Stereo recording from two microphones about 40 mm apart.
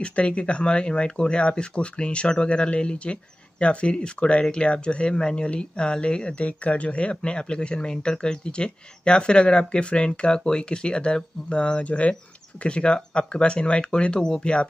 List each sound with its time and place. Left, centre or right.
0.0 s speech: left